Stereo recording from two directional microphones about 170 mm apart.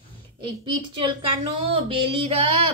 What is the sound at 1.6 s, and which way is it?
Female singing, 35° right (ahead or behind).